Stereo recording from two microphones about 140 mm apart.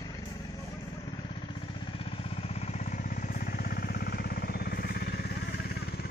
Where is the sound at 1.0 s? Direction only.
35° left (ahead or behind).